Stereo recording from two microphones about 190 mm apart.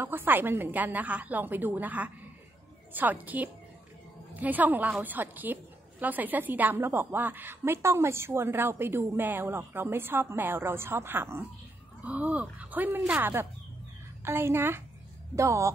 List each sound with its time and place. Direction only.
0.0 s a woman's voice: 10° right (ahead or behind)